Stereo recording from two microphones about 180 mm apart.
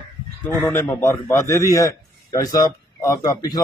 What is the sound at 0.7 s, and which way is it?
A man's voice, 10° left (ahead or behind).